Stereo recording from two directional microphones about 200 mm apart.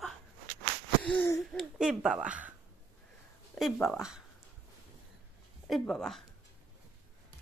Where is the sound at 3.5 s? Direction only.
Centre (ahead or behind).